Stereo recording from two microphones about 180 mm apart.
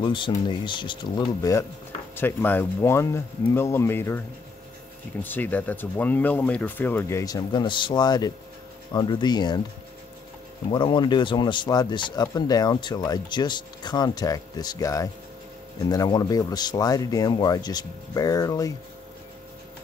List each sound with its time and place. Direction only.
0.0 s speech: 25° left (ahead or behind)
5.2 s speech: 10° left (ahead or behind)
10.7 s speech: 25° left (ahead or behind)